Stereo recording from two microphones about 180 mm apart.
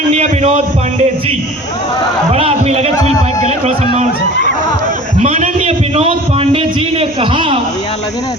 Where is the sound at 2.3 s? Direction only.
35° right (ahead or behind).